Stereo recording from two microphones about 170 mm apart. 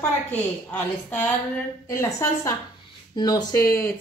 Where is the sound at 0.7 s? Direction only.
10° left (ahead or behind).